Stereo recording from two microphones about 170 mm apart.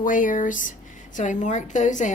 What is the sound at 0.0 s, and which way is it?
A woman's voice, 50° left (ahead or behind).